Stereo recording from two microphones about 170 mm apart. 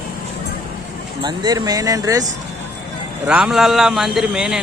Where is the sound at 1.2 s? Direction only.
25° right (ahead or behind).